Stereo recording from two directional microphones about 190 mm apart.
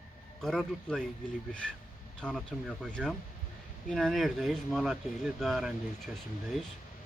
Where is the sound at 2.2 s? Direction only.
5° left (ahead or behind).